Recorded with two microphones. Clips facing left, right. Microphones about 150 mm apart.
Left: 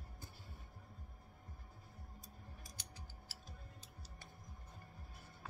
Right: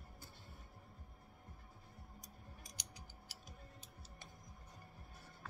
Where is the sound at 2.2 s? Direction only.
20° right (ahead or behind).